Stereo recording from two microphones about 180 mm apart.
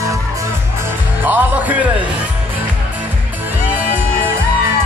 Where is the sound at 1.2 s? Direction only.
10° right (ahead or behind).